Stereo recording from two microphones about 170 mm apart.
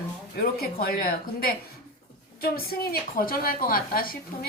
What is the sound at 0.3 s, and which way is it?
A woman's voice, 65° left (ahead or behind).